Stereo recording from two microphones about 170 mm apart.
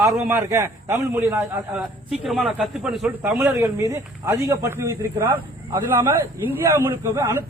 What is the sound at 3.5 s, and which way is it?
A man's voice, 20° right (ahead or behind).